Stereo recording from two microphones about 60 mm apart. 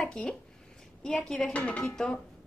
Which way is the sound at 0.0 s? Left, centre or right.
Centre.